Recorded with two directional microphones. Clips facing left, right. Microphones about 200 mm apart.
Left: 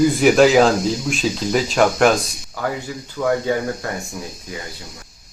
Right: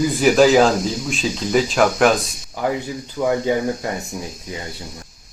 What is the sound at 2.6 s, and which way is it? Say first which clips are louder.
Speech: right 3 dB; 20° right (ahead or behind).